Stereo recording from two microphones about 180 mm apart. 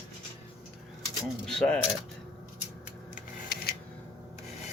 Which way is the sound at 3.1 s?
55° left (ahead or behind).